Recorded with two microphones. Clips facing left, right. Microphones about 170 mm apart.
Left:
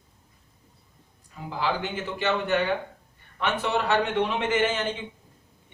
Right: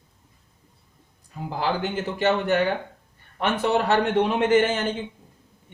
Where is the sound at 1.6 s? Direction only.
40° right (ahead or behind).